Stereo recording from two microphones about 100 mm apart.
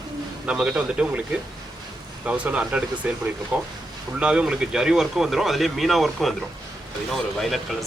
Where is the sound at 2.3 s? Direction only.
15° right (ahead or behind).